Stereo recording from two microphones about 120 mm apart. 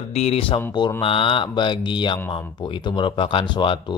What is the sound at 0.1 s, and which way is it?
Speech, 60° left (ahead or behind).